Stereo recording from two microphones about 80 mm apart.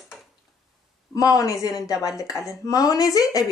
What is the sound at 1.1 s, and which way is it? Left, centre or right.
Speech, left.